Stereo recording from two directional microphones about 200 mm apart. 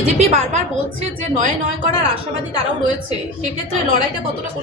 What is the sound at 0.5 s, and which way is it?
A woman's voice, 35° right (ahead or behind).